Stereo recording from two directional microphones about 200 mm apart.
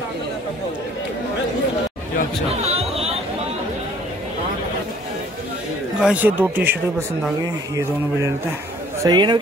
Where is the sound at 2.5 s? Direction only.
30° right (ahead or behind).